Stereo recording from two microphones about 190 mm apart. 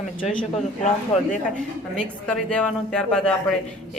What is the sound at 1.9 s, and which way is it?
Speech, 5° left (ahead or behind).